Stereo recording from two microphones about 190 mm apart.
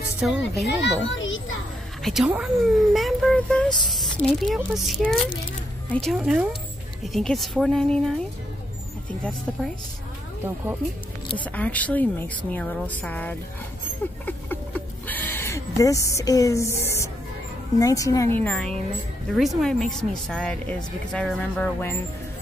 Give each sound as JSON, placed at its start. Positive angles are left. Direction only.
{"t": 0.2, "sound": "speech", "side_deg": 0}
{"t": 1.1, "sound": "a child's voice", "side_deg": 85}
{"t": 2.0, "sound": "speech", "side_deg": 0}
{"t": 9.5, "sound": "speech", "side_deg": 0}
{"t": 11.4, "sound": "a woman's voice", "side_deg": 10}
{"t": 14.2, "sound": "a sound", "side_deg": 10}
{"t": 17.7, "sound": "a woman's voice", "side_deg": 20}